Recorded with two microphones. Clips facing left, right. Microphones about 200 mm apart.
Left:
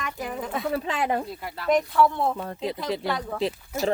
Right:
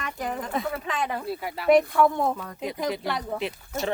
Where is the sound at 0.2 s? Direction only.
10° left (ahead or behind).